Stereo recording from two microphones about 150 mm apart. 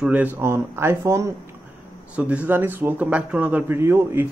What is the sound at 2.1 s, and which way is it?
Speech, 10° right (ahead or behind).